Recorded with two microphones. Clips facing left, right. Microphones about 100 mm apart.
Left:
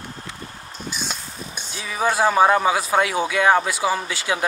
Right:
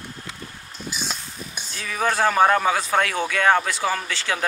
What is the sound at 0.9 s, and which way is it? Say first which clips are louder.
Speech: even; centre (ahead or behind).